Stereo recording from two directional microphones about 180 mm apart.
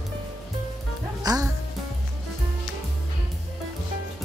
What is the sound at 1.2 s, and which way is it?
Music, 20° right (ahead or behind).